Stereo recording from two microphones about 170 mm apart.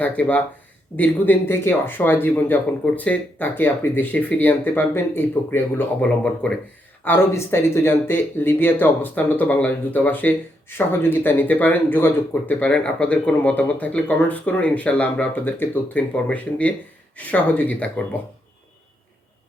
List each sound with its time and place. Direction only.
0.0 s speech: 10° left (ahead or behind)